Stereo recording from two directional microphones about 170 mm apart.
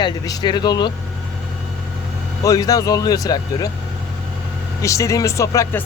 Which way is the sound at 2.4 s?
20° left (ahead or behind).